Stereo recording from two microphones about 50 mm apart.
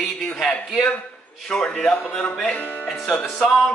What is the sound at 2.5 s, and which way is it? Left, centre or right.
Speech, left.